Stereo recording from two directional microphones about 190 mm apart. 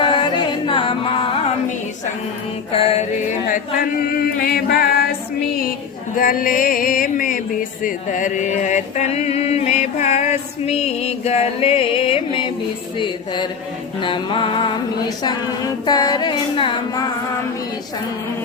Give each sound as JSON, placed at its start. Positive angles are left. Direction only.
{"t": 0.0, "sound": "music", "side_deg": 25}
{"t": 2.7, "sound": "music", "side_deg": 30}
{"t": 4.4, "sound": "music", "side_deg": 55}
{"t": 6.1, "sound": "music", "side_deg": 45}
{"t": 14.0, "sound": "singing", "side_deg": 25}
{"t": 15.9, "sound": "singing", "side_deg": 20}